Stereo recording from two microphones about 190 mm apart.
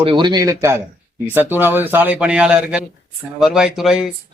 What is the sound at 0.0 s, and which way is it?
A man's voice, 25° right (ahead or behind).